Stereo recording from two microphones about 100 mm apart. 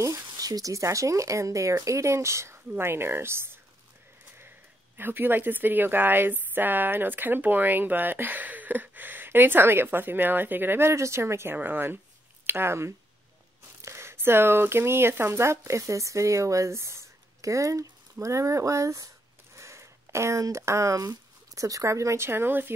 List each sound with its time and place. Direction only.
0.3 s a woman's voice: 40° right (ahead or behind)
4.9 s a woman's voice: 20° right (ahead or behind)